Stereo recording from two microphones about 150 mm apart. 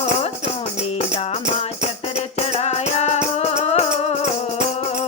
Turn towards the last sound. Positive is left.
turn(degrees=45)  # may be behind; listen again after turning